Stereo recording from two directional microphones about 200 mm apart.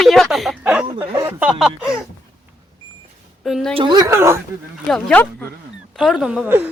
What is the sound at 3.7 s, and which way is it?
Speech, 20° right (ahead or behind).